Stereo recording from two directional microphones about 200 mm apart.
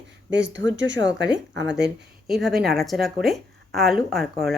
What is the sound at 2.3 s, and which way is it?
Speech, centre (ahead or behind).